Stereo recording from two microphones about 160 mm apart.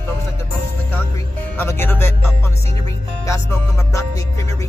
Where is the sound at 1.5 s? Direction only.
15° left (ahead or behind).